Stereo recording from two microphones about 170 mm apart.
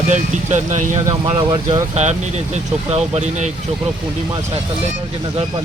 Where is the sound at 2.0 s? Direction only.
40° right (ahead or behind).